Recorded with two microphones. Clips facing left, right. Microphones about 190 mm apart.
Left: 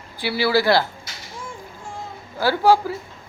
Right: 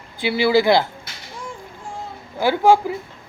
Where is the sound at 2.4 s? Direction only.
20° right (ahead or behind).